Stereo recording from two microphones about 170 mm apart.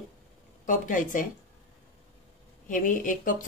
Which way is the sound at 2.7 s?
50° left (ahead or behind).